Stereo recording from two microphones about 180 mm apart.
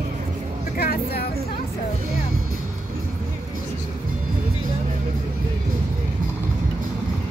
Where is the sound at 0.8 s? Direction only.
60° left (ahead or behind).